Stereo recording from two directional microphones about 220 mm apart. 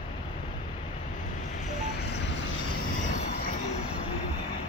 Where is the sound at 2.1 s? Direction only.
50° left (ahead or behind).